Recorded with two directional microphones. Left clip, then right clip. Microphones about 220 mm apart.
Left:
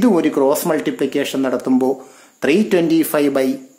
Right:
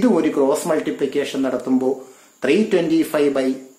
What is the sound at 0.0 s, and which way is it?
Speech, 45° left (ahead or behind).